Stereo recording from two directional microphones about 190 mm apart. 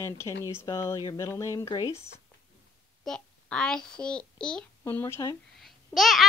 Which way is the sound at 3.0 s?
5° left (ahead or behind).